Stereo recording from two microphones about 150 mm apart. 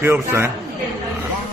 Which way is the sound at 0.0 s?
15° right (ahead or behind).